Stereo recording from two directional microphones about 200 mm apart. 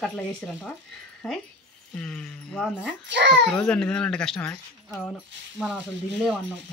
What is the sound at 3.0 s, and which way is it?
Speech, 65° right (ahead or behind).